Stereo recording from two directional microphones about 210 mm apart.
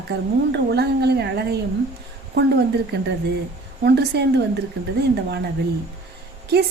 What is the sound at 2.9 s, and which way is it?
A woman's voice, 50° right (ahead or behind).